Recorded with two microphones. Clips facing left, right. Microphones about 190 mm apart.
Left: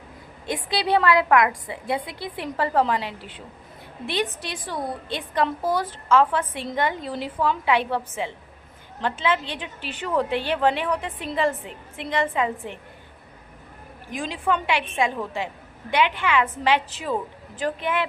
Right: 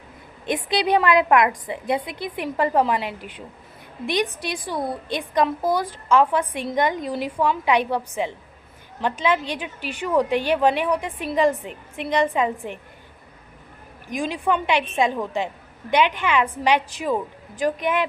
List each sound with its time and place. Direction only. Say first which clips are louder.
0.4 s a woman's voice: right 3 dB; 20° right (ahead or behind)
14.1 s a woman's voice: right 2 dB; 15° right (ahead or behind)